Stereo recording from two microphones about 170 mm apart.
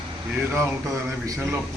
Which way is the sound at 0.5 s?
15° right (ahead or behind).